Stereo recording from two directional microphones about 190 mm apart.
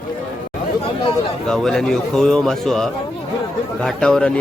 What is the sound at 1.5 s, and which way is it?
A man's voice, centre (ahead or behind).